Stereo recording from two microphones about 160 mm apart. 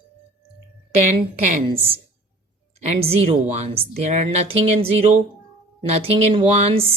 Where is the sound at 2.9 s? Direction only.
40° right (ahead or behind).